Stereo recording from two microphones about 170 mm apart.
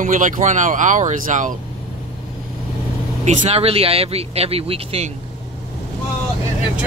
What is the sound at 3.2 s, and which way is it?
A man's voice, 40° right (ahead or behind).